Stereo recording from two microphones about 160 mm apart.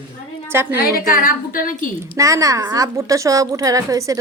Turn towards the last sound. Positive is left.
turn(degrees=-20)  # may be behind; listen again after turning